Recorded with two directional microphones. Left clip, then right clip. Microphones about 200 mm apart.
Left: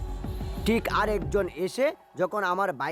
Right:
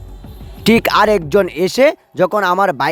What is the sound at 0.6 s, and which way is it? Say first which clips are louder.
Speech: right 14 dB; 40° right (ahead or behind).